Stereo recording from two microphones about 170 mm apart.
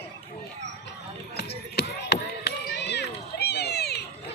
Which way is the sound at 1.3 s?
70° left (ahead or behind).